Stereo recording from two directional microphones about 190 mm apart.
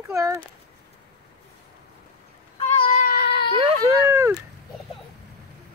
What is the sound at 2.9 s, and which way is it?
Cat, 55° left (ahead or behind).